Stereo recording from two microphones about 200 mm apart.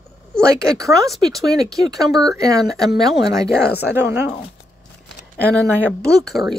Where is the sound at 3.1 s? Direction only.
20° right (ahead or behind).